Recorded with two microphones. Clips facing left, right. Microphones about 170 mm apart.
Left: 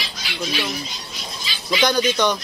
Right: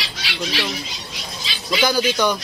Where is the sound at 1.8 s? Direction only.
5° right (ahead or behind).